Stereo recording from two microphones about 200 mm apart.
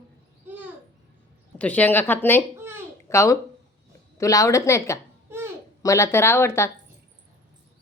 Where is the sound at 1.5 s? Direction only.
5° left (ahead or behind).